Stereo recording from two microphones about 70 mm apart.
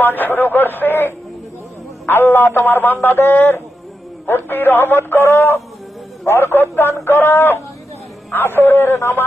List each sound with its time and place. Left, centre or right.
0.0 s speech: left